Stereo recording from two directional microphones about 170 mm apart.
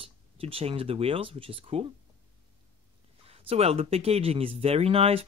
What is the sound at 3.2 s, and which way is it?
Speech, 35° right (ahead or behind).